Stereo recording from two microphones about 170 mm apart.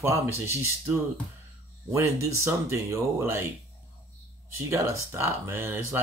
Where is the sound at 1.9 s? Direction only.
15° right (ahead or behind).